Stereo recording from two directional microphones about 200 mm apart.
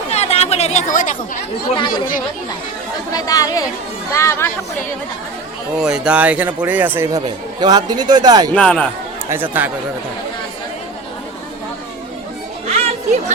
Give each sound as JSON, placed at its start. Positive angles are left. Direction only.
{"t": 0.1, "sound": "chatter", "side_deg": 30}
{"t": 1.9, "sound": "speech", "side_deg": 45}
{"t": 3.1, "sound": "speech", "side_deg": 20}
{"t": 5.8, "sound": "speech", "side_deg": -5}
{"t": 8.5, "sound": "speech", "side_deg": 5}
{"t": 9.3, "sound": "speech", "side_deg": -10}
{"t": 12.6, "sound": "music", "side_deg": -35}